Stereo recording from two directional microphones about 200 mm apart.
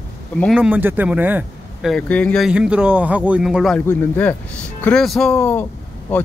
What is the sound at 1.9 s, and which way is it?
Speech, 5° left (ahead or behind).